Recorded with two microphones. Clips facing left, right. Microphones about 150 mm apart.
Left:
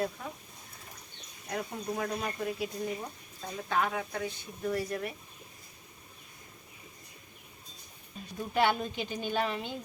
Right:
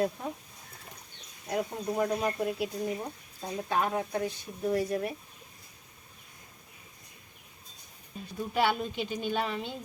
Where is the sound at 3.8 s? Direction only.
25° right (ahead or behind).